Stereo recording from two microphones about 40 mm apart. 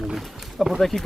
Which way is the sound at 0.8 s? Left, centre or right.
Centre.